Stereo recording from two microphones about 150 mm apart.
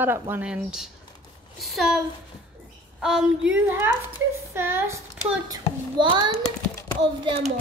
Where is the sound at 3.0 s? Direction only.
5° right (ahead or behind).